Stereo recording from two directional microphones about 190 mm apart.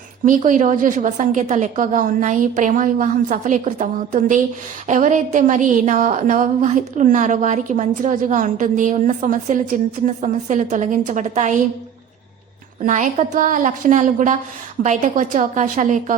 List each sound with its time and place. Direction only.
0.3 s a woman's voice: 40° right (ahead or behind)
12.8 s a woman's voice: 40° right (ahead or behind)